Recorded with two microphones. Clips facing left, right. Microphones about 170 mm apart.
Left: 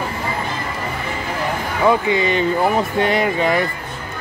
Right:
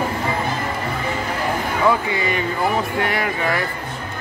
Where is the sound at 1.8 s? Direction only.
25° left (ahead or behind).